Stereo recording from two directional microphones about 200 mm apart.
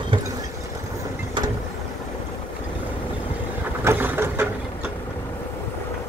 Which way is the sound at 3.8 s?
10° right (ahead or behind).